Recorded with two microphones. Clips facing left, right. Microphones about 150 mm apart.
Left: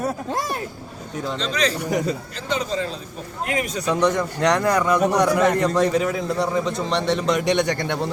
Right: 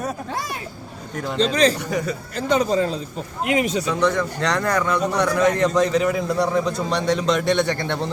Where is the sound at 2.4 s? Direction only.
45° right (ahead or behind).